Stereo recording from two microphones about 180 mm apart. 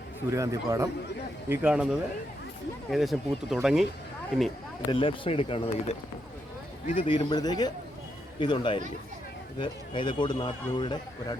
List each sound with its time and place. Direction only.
0.3 s a man's voice: 15° right (ahead or behind)
1.5 s speech: 5° right (ahead or behind)
4.9 s speech: 30° left (ahead or behind)
7.1 s speech: 25° left (ahead or behind)